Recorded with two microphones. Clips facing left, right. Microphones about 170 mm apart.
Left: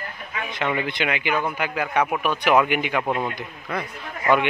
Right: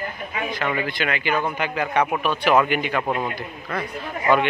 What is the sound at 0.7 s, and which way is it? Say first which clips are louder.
Speech: even; 20° left (ahead or behind).